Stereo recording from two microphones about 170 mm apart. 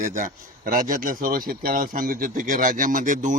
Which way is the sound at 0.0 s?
50° right (ahead or behind).